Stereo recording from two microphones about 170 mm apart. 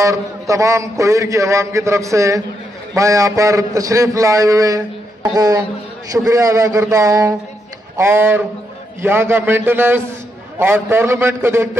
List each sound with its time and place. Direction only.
0.0 s a man's voice: 20° right (ahead or behind)